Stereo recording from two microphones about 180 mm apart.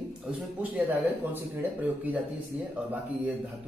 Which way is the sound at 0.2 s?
10° right (ahead or behind).